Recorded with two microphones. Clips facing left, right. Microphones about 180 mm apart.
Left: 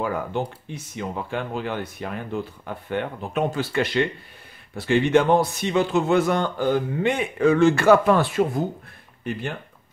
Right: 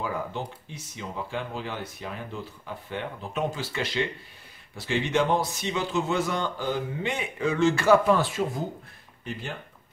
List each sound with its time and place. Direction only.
0.0 s speech: 60° left (ahead or behind)